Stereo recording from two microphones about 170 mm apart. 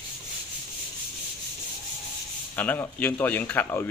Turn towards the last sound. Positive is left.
turn(degrees=10)  # may be behind; listen again after turning